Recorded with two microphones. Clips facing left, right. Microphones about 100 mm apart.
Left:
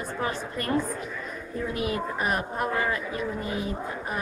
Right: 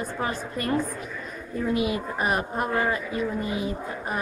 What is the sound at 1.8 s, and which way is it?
A woman's voice, 10° right (ahead or behind).